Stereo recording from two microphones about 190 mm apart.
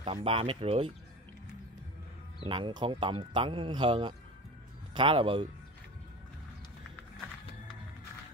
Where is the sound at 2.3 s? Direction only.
25° right (ahead or behind).